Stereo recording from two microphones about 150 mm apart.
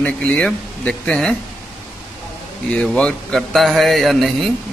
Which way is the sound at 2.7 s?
5° left (ahead or behind).